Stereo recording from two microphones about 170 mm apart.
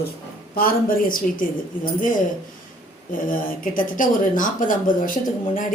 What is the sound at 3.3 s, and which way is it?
A woman's voice, 55° left (ahead or behind).